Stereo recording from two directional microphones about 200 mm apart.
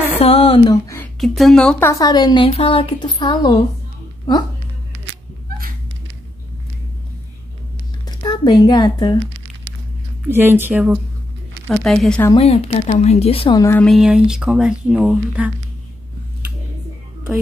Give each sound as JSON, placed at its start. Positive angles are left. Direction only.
{"t": 0.2, "sound": "speech", "side_deg": 30}
{"t": 1.2, "sound": "a woman's voice", "side_deg": 0}
{"t": 8.2, "sound": "speech", "side_deg": 20}
{"t": 10.2, "sound": "speech", "side_deg": -10}
{"t": 12.4, "sound": "speech", "side_deg": 30}
{"t": 13.6, "sound": "speech", "side_deg": 10}